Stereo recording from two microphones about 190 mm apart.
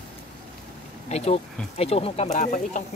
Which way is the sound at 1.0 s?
35° left (ahead or behind).